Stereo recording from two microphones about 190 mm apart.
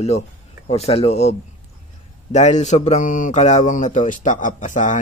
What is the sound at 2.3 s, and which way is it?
Speech, 40° left (ahead or behind).